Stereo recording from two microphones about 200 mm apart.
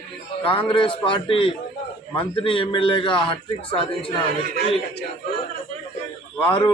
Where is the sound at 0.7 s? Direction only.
25° left (ahead or behind).